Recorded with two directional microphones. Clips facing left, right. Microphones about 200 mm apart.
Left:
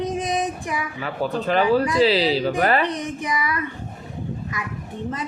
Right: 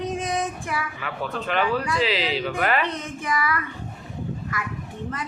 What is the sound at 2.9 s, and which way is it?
Speech, 15° left (ahead or behind).